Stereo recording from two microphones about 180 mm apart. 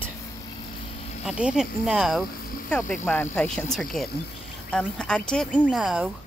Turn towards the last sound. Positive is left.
turn(degrees=-5)  # may be behind; listen again after turning